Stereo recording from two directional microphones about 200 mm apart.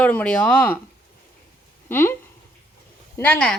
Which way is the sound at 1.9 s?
10° left (ahead or behind).